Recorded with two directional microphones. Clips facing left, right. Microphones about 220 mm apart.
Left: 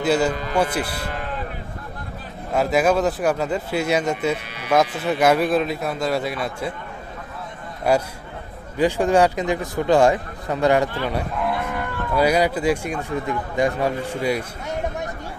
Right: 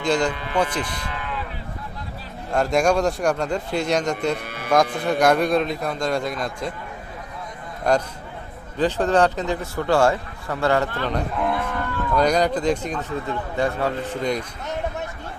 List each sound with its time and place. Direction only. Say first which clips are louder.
0.0 s speech: left 2 dB; 5° left (ahead or behind)
0.3 s a man's voice: left 2 dB; 40° left (ahead or behind)
0.6 s speech: left 1 dB; 10° left (ahead or behind)
1.1 s a sound: left 2 dB; 45° left (ahead or behind)
2.5 s a man's voice: left 1 dB; 5° left (ahead or behind)
7.9 s speech: left 1 dB; 10° left (ahead or behind)
11.0 s moo: even; 5° left (ahead or behind)
11.8 s speech: left 1 dB; 10° left (ahead or behind)